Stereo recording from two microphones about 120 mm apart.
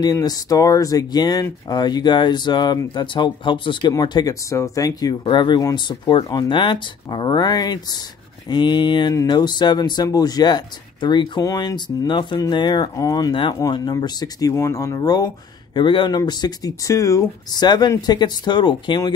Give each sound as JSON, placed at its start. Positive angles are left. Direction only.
{"t": 0.0, "sound": "speech", "side_deg": 30}
{"t": 5.2, "sound": "speech", "side_deg": 40}
{"t": 13.3, "sound": "speech", "side_deg": 45}
{"t": 13.6, "sound": "speech", "side_deg": 30}